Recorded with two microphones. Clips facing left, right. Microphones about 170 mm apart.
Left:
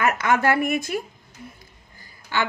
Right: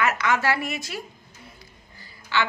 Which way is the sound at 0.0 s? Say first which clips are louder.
Left 3 dB; 50° left (ahead or behind).